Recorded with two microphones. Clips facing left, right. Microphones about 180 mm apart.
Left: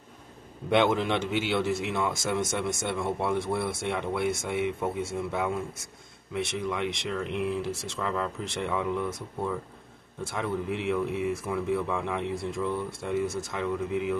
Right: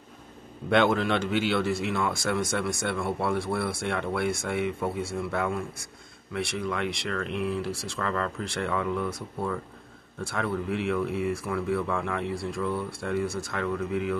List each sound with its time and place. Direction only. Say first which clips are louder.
0.7 s a man's voice: right 1 dB; 15° left (ahead or behind)